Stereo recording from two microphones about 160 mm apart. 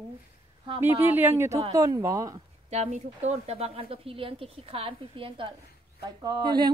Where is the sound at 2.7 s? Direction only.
45° right (ahead or behind); by 6.7 s 25° right (ahead or behind).